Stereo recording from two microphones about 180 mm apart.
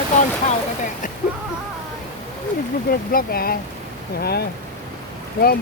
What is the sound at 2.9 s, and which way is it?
Speech, 55° left (ahead or behind).